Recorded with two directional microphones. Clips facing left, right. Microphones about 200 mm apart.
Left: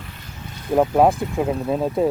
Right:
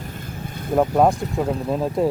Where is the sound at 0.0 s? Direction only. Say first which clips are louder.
Right 6 dB; 50° right (ahead or behind).